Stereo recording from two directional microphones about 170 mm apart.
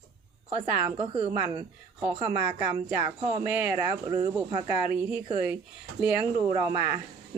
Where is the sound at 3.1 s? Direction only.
35° right (ahead or behind).